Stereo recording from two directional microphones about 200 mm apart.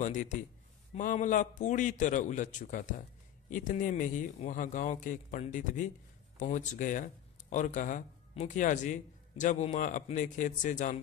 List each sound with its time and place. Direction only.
0.0 s a man's voice: 35° left (ahead or behind)